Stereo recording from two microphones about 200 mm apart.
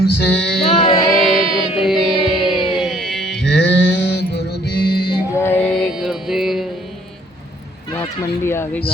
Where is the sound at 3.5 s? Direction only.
60° left (ahead or behind).